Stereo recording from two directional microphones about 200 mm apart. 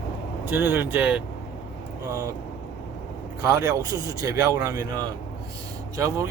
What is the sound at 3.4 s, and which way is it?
Speech, 15° right (ahead or behind).